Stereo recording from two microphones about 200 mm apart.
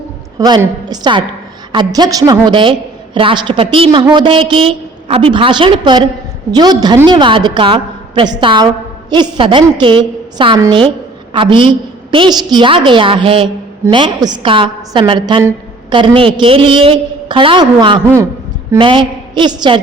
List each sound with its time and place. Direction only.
0.3 s a woman's voice: 20° right (ahead or behind)
18.0 s a man's voice: 15° right (ahead or behind)
18.8 s a woman's voice: 25° right (ahead or behind)